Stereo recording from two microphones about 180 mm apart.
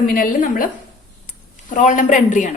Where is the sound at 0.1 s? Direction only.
50° left (ahead or behind).